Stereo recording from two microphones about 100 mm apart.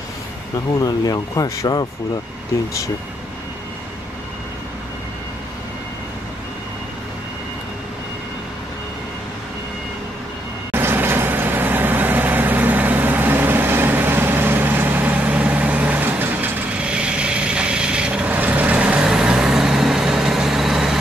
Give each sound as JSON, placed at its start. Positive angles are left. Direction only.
{"t": 0.7, "sound": "speech", "side_deg": 40}
{"t": 10.7, "sound": "vehicle", "side_deg": -25}